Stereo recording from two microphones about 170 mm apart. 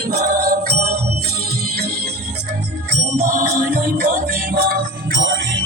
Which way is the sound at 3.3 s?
55° right (ahead or behind).